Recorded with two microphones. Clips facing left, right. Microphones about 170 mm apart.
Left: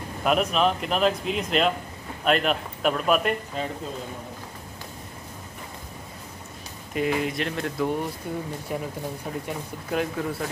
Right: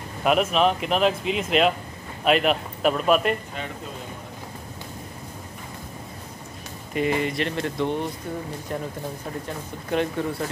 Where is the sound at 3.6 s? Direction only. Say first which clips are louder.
Left 4 dB; 35° left (ahead or behind).